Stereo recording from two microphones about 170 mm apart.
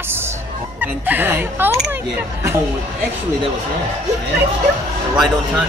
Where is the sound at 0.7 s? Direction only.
10° right (ahead or behind).